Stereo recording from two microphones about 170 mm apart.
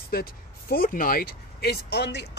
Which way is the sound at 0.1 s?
60° left (ahead or behind).